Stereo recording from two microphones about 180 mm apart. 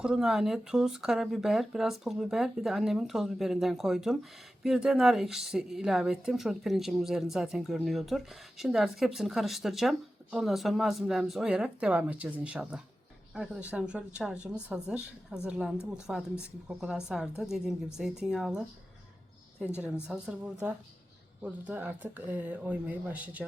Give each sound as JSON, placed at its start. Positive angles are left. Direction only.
{"t": 0.0, "sound": "speech", "side_deg": -5}
{"t": 19.8, "sound": "speech", "side_deg": -5}